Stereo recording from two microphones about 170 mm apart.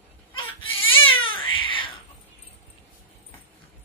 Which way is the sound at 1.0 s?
30° left (ahead or behind).